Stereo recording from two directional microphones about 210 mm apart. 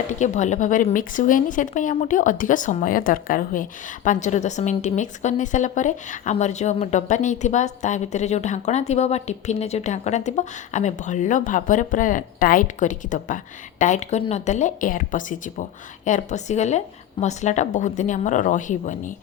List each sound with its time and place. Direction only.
0.1 s speech: 35° left (ahead or behind)